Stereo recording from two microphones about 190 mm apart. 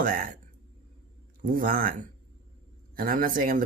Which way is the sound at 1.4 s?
50° right (ahead or behind).